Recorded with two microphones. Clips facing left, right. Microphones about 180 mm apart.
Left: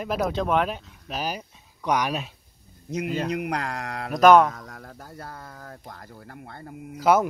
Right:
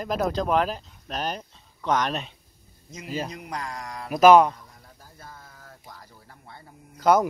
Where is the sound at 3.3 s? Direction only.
65° left (ahead or behind).